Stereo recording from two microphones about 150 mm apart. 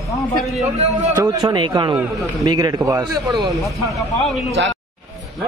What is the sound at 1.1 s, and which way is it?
A man's voice, 25° right (ahead or behind).